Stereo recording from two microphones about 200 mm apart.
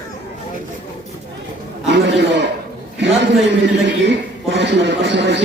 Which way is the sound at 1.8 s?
60° right (ahead or behind).